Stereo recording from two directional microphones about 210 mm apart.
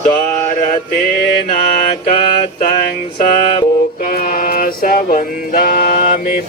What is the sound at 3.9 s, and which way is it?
Music, 40° left (ahead or behind).